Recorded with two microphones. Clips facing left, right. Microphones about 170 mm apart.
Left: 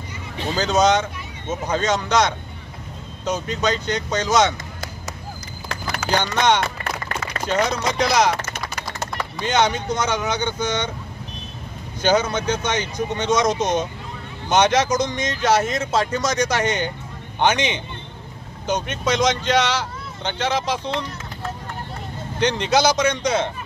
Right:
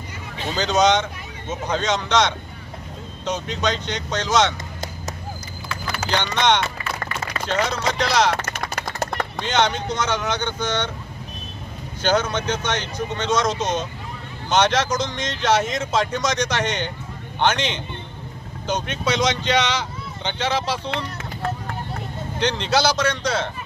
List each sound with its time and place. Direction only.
0.6 s speech: 5° left (ahead or behind)
6.0 s speech: 10° left (ahead or behind)
8.5 s typing: 50° right (ahead or behind)
9.5 s speech: 10° left (ahead or behind)
12.0 s speech: 10° left (ahead or behind)
22.4 s speech: 10° left (ahead or behind)